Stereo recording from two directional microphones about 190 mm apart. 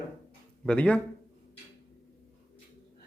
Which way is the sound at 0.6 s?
5° left (ahead or behind).